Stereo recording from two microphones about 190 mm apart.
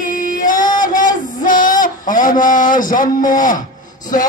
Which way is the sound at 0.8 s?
45° left (ahead or behind).